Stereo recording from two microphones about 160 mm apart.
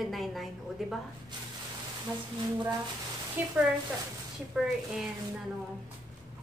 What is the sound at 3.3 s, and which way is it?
A woman's voice, 10° right (ahead or behind).